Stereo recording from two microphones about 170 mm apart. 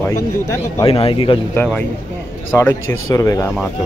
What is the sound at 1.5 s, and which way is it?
Speech, 10° left (ahead or behind).